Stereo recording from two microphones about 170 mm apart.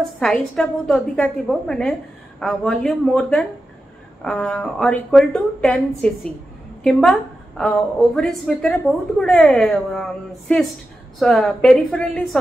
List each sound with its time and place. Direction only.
0.2 s a woman's voice: 5° left (ahead or behind)